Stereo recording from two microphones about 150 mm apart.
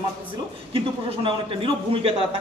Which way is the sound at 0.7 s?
35° right (ahead or behind).